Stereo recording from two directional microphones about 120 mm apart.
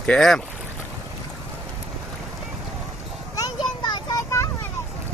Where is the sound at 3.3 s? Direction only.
35° left (ahead or behind).